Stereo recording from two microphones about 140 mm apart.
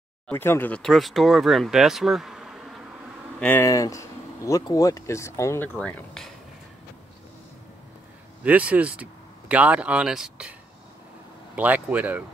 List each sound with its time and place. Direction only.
0.3 s speech: 15° left (ahead or behind); by 2.6 s centre (ahead or behind)
3.3 s speech: 10° left (ahead or behind)
3.6 s speech: 25° left (ahead or behind)
5.8 s speech: 10° left (ahead or behind)
8.5 s speech: 10° right (ahead or behind)
11.5 s speech: 10° right (ahead or behind)